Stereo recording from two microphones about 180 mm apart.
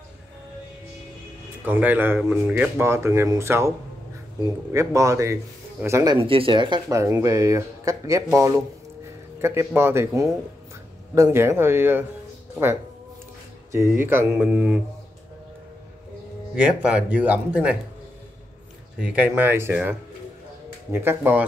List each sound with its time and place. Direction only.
1.6 s speech: 10° right (ahead or behind)
6.2 s speech: 30° right (ahead or behind); by 12.1 s 10° right (ahead or behind)
13.7 s speech: 15° right (ahead or behind)
16.5 s speech: 5° right (ahead or behind)
18.9 s speech: 10° right (ahead or behind)